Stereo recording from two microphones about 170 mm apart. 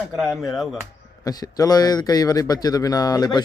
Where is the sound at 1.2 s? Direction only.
20° left (ahead or behind).